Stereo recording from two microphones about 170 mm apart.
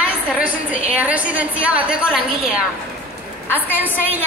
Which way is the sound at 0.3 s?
5° right (ahead or behind).